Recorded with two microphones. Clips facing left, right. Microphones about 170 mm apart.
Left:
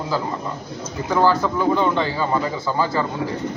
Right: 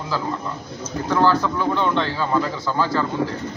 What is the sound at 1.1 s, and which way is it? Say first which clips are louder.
A man's voice: left 1 dB; 10° left (ahead or behind).